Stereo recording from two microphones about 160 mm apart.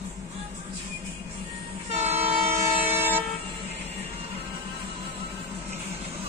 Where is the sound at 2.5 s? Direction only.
15° right (ahead or behind).